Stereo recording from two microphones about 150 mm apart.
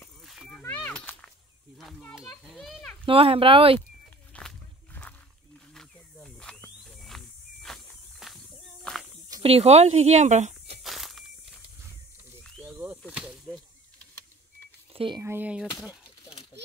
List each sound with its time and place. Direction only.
0.2 s a sound: centre (ahead or behind)
0.6 s a sound: 10° left (ahead or behind)
1.8 s a child's voice: centre (ahead or behind)
3.1 s speech: 40° right (ahead or behind)
4.3 s walk: 5° left (ahead or behind)
5.8 s snake: 5° left (ahead or behind)
6.9 s cricket: centre (ahead or behind)
8.9 s a sound: 5° left (ahead or behind)
9.4 s speech: 40° right (ahead or behind)
10.8 s walk: centre (ahead or behind)
12.6 s snake: 10° right (ahead or behind)
14.9 s speech: 35° right (ahead or behind)
15.2 s speech: 10° right (ahead or behind)